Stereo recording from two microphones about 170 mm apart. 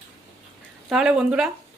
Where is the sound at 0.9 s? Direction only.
5° right (ahead or behind).